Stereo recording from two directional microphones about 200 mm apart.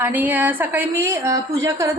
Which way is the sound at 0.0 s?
10° right (ahead or behind).